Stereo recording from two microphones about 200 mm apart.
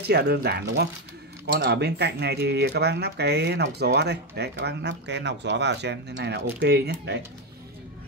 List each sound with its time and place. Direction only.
0.1 s speech: 55° right (ahead or behind)